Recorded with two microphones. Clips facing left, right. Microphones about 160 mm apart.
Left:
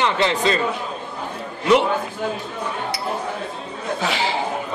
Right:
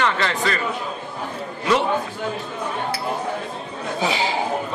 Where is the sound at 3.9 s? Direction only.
15° right (ahead or behind).